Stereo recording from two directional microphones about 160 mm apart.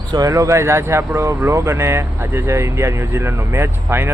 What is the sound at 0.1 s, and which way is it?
Speech, 20° right (ahead or behind).